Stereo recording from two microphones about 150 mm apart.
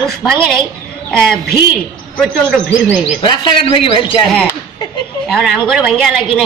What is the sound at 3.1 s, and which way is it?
Speech, 30° left (ahead or behind).